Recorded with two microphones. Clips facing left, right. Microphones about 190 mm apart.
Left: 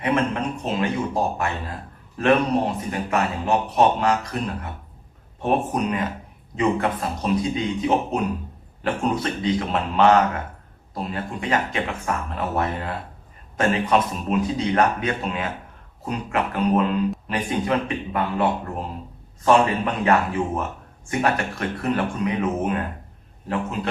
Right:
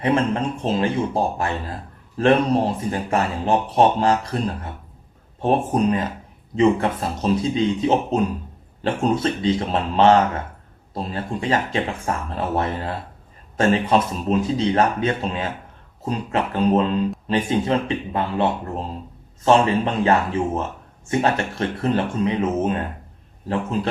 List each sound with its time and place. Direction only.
0.0 s a man's voice: 30° right (ahead or behind)